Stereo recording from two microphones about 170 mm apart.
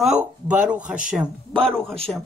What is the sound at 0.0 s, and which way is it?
Speech, 5° right (ahead or behind).